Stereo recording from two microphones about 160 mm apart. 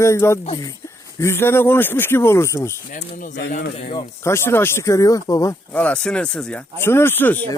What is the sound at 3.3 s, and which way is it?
Speech, 90° left.